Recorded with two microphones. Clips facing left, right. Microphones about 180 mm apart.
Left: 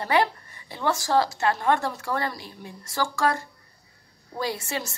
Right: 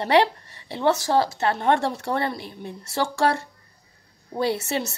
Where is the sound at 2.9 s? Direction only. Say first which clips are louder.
Right 3 dB; 30° right (ahead or behind).